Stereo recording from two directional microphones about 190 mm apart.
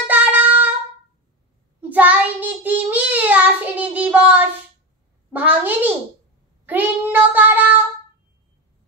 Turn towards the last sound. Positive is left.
turn(degrees=-10)  # may be behind; listen again after turning